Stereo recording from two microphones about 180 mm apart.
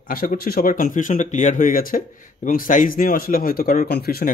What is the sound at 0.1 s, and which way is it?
Speech, 55° left (ahead or behind).